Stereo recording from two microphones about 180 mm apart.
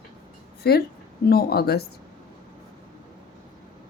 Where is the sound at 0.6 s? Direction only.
60° left (ahead or behind).